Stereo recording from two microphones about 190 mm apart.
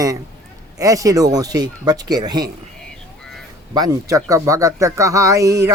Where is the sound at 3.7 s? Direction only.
20° right (ahead or behind).